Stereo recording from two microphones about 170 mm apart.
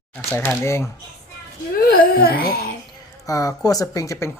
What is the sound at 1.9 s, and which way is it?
Speech, 60° left (ahead or behind).